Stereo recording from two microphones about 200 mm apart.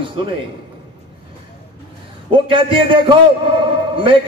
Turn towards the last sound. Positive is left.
turn(degrees=-25)  # may be behind; listen again after turning